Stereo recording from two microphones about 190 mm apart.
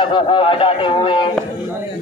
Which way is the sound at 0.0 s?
25° left (ahead or behind).